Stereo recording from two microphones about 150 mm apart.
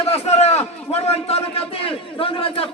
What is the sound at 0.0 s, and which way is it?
A man's voice, 40° left (ahead or behind).